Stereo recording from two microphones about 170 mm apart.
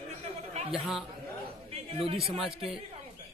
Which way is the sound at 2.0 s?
35° right (ahead or behind).